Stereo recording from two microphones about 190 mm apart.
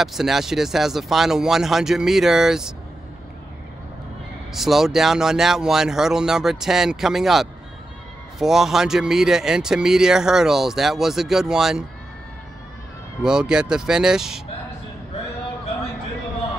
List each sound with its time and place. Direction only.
0.0 s speech: centre (ahead or behind)
4.6 s speech: centre (ahead or behind)
13.2 s speech: 5° right (ahead or behind)